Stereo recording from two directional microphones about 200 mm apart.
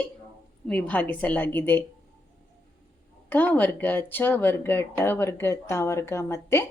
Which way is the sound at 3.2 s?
10° left (ahead or behind).